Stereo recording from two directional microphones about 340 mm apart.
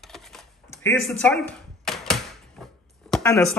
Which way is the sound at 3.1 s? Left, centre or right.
Centre.